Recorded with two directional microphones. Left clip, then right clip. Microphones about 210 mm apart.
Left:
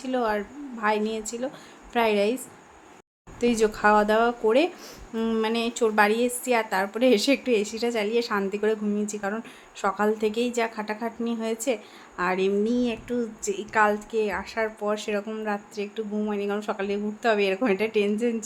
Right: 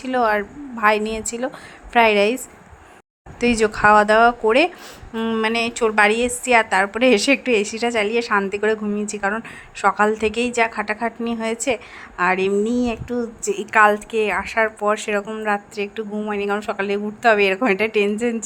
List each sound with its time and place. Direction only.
0.0 s a woman's voice: 20° right (ahead or behind)
3.4 s a woman's voice: 15° right (ahead or behind)